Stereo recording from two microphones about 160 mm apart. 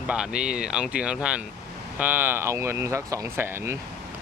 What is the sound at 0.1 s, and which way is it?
Speech, 5° right (ahead or behind).